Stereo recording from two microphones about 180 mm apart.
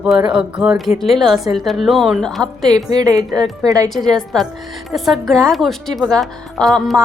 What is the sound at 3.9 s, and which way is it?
Speech, centre (ahead or behind).